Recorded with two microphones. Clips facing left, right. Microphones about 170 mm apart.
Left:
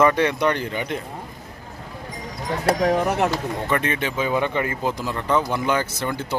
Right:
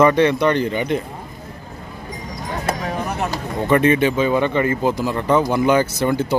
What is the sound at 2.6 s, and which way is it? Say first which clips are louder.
Speech: left 6 dB; 85° left.